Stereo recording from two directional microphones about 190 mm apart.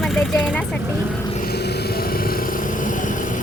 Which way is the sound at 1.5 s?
60° left (ahead or behind).